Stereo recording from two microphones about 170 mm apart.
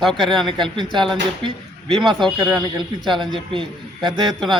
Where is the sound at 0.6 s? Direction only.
30° right (ahead or behind).